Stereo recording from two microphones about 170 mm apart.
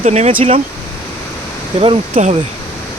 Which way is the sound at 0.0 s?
40° right (ahead or behind).